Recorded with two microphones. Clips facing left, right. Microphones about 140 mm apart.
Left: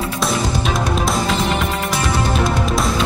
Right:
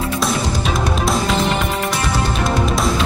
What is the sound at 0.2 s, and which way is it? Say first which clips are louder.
Music: left 3 dB; centre (ahead or behind).